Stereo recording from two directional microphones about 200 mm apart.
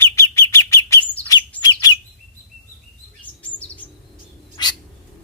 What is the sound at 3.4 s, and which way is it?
Chirp, 5° left (ahead or behind).